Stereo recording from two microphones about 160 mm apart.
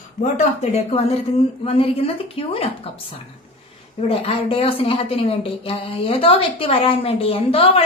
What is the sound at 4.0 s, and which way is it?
A woman's voice, 35° left (ahead or behind).